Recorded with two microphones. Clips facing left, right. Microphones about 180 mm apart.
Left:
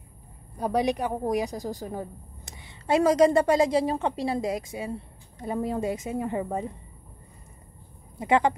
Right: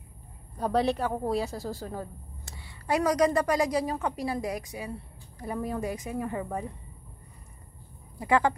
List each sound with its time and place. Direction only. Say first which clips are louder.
0.6 s a woman's voice: left 1 dB; 10° left (ahead or behind)
8.2 s a woman's voice: left 2 dB; 20° left (ahead or behind)